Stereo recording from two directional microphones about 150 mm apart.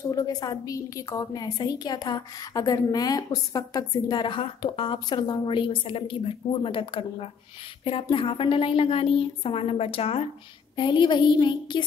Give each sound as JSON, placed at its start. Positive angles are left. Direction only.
{"t": 0.1, "sound": "a woman's voice", "side_deg": 25}